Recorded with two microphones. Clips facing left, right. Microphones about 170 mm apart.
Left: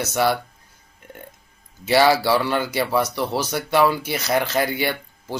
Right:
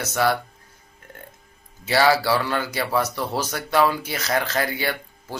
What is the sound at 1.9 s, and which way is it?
Speech, 15° left (ahead or behind).